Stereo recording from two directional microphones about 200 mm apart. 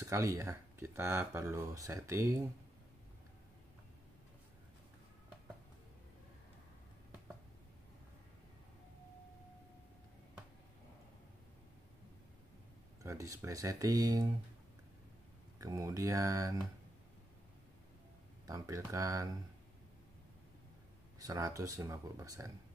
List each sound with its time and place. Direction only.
0.0 s speech: 15° right (ahead or behind)
13.0 s speech: 15° right (ahead or behind)
15.6 s speech: 15° right (ahead or behind)
18.5 s speech: 15° right (ahead or behind)
21.2 s speech: 15° right (ahead or behind)